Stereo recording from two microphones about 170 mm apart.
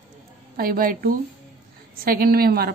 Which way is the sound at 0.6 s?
55° right (ahead or behind).